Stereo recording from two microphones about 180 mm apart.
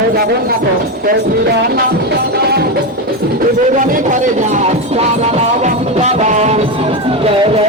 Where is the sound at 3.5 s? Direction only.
45° right (ahead or behind).